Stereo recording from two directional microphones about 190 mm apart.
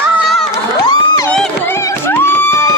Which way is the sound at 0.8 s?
20° left (ahead or behind).